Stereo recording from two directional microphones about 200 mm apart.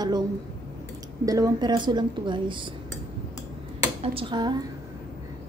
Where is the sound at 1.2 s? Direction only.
20° right (ahead or behind).